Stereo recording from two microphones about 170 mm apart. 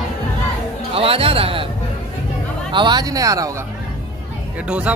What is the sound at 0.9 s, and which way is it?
Speech, 35° right (ahead or behind).